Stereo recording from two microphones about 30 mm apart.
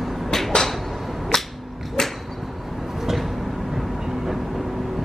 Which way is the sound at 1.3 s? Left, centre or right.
Centre.